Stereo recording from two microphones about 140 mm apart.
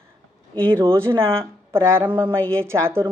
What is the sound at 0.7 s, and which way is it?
Speech, 40° right (ahead or behind).